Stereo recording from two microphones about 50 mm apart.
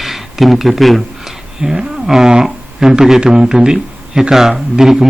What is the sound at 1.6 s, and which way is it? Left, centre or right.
Speech, centre.